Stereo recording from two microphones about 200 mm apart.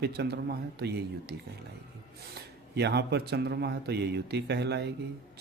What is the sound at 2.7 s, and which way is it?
Speech, 55° right (ahead or behind).